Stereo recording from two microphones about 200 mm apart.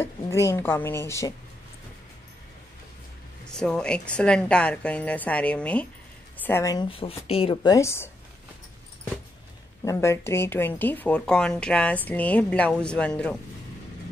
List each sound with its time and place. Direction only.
0.0 s speech: 15° left (ahead or behind)
3.4 s a woman's voice: 5° left (ahead or behind)
9.8 s speech: 15° left (ahead or behind)